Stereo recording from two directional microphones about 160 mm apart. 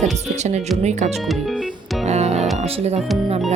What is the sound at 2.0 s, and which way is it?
Music, 45° right (ahead or behind).